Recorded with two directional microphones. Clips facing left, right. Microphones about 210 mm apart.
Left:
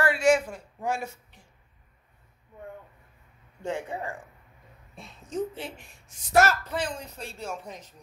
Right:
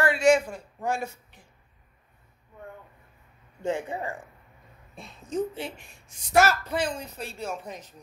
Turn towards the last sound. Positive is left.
turn(degrees=-5)  # may be behind; listen again after turning